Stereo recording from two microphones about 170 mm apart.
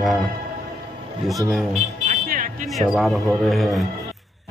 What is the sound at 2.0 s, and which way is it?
Music, 55° right (ahead or behind).